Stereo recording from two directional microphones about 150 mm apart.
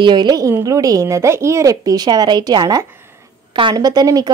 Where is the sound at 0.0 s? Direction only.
30° right (ahead or behind).